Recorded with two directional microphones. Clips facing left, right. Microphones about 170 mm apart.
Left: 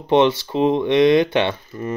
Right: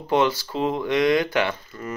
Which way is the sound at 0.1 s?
25° left (ahead or behind).